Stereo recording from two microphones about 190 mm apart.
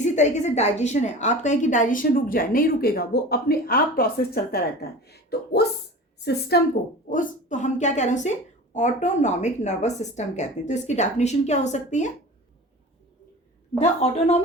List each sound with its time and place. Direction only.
0.0 s a woman's voice: 40° left (ahead or behind); by 6.6 s 60° left (ahead or behind)
7.1 s a woman's voice: 40° left (ahead or behind)
13.7 s a woman's voice: 35° left (ahead or behind)